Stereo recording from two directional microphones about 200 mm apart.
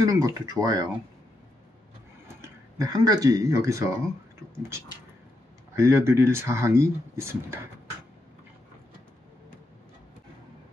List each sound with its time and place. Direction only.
0.0 s speech: 15° right (ahead or behind)
2.2 s speech: 15° right (ahead or behind)
5.8 s speech: 10° right (ahead or behind)